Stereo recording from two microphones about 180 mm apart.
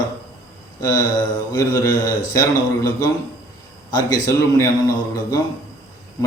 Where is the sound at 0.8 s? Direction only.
20° left (ahead or behind).